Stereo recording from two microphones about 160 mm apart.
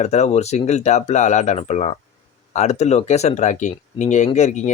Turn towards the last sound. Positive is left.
turn(degrees=45)  # may be behind; listen again after turning